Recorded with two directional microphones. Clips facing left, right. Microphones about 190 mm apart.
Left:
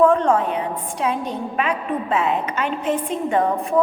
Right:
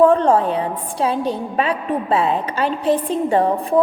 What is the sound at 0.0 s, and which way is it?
A woman's voice, 35° right (ahead or behind).